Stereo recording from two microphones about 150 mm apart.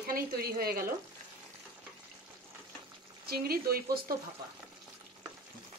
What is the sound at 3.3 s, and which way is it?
Speech, 90° right.